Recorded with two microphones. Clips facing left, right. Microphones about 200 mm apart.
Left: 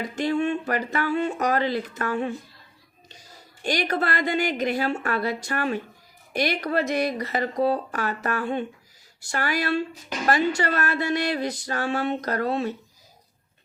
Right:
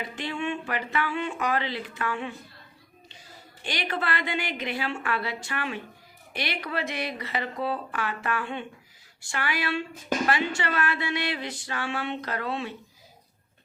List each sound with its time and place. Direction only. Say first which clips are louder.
0.0 s a woman's voice: left 7 dB; 40° left (ahead or behind)